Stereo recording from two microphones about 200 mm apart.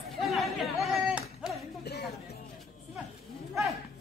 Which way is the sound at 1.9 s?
55° left (ahead or behind).